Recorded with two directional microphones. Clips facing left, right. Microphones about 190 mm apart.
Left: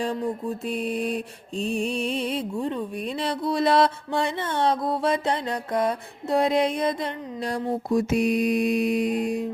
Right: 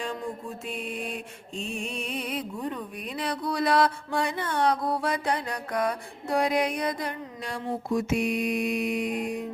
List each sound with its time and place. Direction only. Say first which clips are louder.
0.6 s mantra: left 7 dB; 35° left (ahead or behind)
7.5 s mantra: left 4 dB; 35° left (ahead or behind)